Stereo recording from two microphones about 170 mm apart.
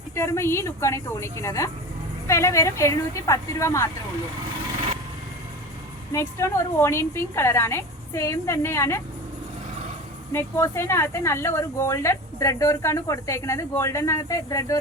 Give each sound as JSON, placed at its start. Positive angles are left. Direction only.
{"t": 0.2, "sound": "speech", "side_deg": 15}
{"t": 6.1, "sound": "speech", "side_deg": 15}
{"t": 10.3, "sound": "speech", "side_deg": 15}